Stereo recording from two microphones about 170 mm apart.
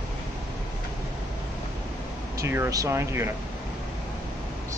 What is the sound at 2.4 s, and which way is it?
Speech, 15° right (ahead or behind).